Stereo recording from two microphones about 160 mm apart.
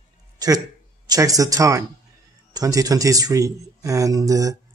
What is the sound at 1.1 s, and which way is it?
Speech, 20° right (ahead or behind).